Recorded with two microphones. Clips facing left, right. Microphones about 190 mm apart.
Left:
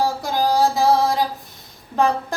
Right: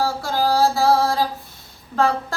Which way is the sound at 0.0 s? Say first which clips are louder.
Left 1 dB; 15° left (ahead or behind).